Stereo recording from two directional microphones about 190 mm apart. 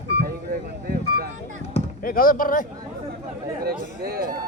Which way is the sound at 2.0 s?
50° left (ahead or behind).